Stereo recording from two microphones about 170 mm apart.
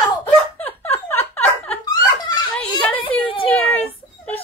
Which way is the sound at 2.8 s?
10° left (ahead or behind).